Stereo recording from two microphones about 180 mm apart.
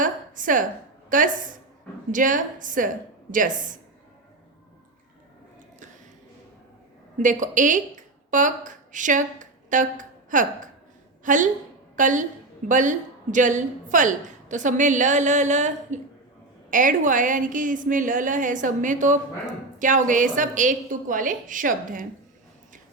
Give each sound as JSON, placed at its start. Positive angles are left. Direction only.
{"t": 0.0, "sound": "a sound", "side_deg": -45}
{"t": 1.1, "sound": "a woman's voice", "side_deg": -50}
{"t": 7.2, "sound": "a woman's voice", "side_deg": -45}